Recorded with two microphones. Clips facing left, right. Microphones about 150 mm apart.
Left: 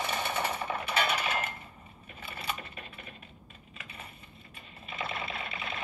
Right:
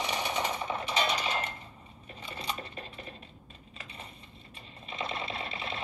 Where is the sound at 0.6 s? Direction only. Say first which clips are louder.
Even; 10° left (ahead or behind).